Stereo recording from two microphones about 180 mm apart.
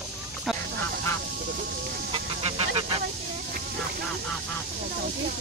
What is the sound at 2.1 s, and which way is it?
Vehicle, 30° right (ahead or behind).